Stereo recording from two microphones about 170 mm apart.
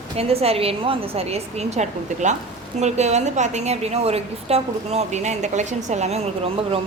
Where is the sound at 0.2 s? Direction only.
35° right (ahead or behind).